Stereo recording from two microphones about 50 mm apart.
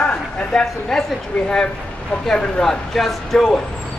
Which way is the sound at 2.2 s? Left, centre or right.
Centre.